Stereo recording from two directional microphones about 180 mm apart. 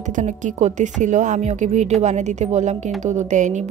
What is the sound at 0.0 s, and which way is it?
A woman's voice, 45° right (ahead or behind).